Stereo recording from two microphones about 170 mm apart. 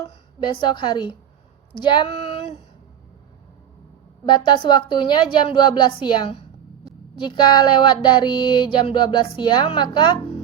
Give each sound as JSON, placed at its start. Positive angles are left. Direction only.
{"t": 0.1, "sound": "a woman's voice", "side_deg": 30}
{"t": 1.8, "sound": "a sound", "side_deg": 25}
{"t": 4.3, "sound": "speech", "side_deg": 30}